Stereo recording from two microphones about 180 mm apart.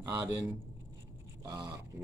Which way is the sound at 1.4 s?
20° right (ahead or behind).